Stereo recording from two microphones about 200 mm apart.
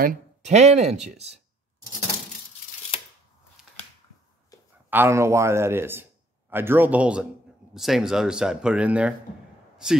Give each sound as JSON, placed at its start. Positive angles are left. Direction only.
{"t": 0.0, "sound": "speech", "side_deg": -40}
{"t": 2.9, "sound": "chopping", "side_deg": 25}
{"t": 4.8, "sound": "a man's voice", "side_deg": -10}